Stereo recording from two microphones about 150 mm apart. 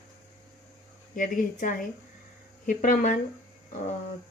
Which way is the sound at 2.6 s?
65° left (ahead or behind).